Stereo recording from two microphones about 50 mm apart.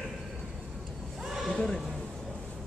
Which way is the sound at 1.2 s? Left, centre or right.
Centre.